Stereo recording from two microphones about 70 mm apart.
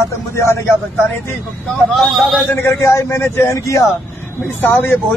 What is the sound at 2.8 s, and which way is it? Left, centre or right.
Speech, left.